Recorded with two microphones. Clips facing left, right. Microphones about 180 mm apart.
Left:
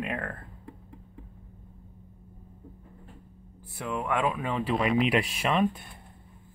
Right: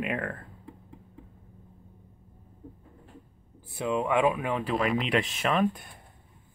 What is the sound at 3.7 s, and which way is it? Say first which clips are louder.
Speech: right 4 dB; 15° right (ahead or behind).